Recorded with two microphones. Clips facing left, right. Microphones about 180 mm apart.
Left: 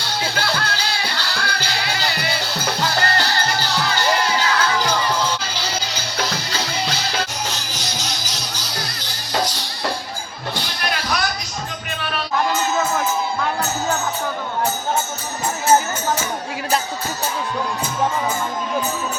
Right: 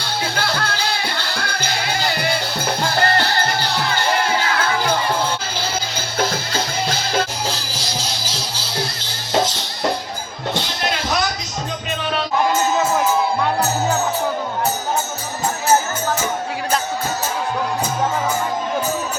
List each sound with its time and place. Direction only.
0.0 s music: 55° right (ahead or behind)
6.1 s music: 50° right (ahead or behind)
7.4 s music: 30° right (ahead or behind)
10.5 s music: 20° right (ahead or behind)